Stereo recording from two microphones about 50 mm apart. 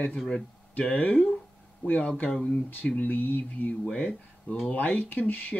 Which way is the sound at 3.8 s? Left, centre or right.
Centre.